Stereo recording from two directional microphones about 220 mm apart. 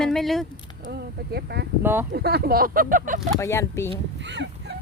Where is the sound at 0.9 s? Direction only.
50° right (ahead or behind).